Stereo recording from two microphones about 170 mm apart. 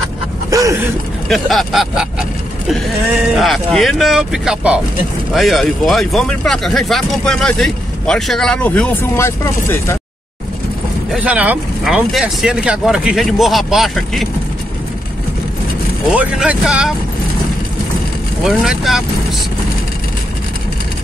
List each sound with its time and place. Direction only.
0.5 s a sound: 20° right (ahead or behind)
1.3 s speech: centre (ahead or behind)
3.3 s speech: centre (ahead or behind)
11.1 s speech: 10° right (ahead or behind)
16.1 s speech: 5° right (ahead or behind)
18.4 s speech: centre (ahead or behind)